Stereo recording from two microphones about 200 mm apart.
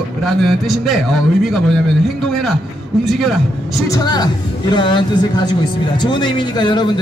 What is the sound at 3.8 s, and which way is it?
A woman's voice, 20° left (ahead or behind).